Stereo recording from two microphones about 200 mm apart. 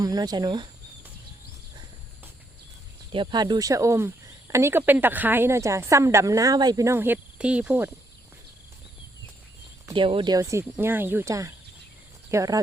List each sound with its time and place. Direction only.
0.0 s speech: 20° right (ahead or behind)
3.1 s speech: 25° right (ahead or behind); by 7.9 s 5° right (ahead or behind)
9.9 s speech: 25° right (ahead or behind)